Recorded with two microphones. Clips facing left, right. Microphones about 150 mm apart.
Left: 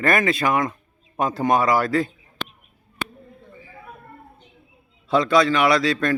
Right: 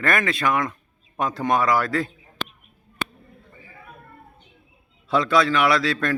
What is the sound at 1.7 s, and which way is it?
Speech, centre (ahead or behind).